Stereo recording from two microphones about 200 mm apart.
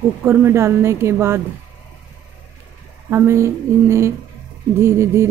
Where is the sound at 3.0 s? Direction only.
10° right (ahead or behind).